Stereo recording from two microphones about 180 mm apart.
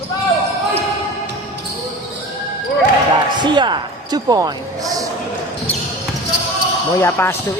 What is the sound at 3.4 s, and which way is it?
Speech, 25° right (ahead or behind).